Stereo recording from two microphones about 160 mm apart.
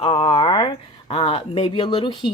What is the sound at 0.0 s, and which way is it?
Speech, 35° left (ahead or behind).